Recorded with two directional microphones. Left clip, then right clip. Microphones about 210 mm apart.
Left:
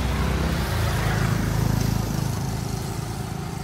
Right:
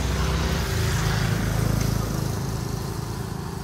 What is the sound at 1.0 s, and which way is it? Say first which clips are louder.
Vehicle: left 1 dB; 30° left (ahead or behind).